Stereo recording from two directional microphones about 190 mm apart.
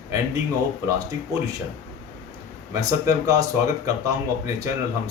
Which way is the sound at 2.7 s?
15° right (ahead or behind).